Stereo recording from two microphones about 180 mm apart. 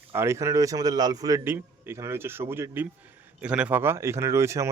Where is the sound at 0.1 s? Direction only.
15° right (ahead or behind).